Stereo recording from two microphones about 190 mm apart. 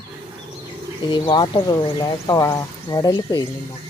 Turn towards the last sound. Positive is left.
turn(degrees=20)  # may be behind; listen again after turning